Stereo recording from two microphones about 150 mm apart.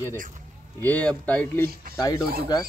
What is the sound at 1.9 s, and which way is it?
Speech, 25° left (ahead or behind).